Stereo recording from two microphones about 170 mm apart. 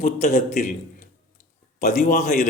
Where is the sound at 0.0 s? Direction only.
45° left (ahead or behind).